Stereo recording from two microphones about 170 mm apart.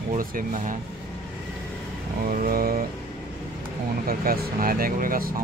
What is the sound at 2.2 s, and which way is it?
Speech, 60° right (ahead or behind).